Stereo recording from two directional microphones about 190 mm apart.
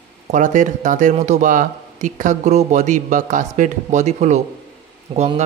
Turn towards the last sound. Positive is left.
turn(degrees=-35)  # may be behind; listen again after turning